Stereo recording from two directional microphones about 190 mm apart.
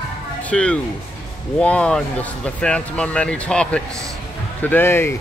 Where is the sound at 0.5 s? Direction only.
5° left (ahead or behind).